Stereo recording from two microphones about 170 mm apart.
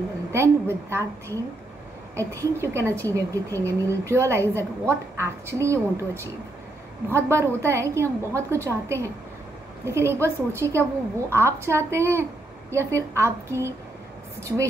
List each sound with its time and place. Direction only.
0.3 s a woman's voice: 15° right (ahead or behind)